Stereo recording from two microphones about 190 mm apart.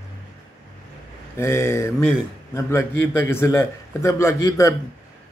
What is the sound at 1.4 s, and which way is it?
A man's voice, 15° left (ahead or behind).